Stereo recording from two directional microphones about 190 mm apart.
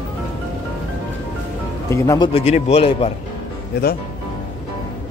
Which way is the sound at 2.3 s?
35° left (ahead or behind).